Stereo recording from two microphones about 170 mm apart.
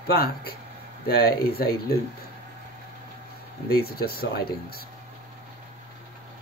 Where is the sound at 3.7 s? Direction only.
65° left (ahead or behind).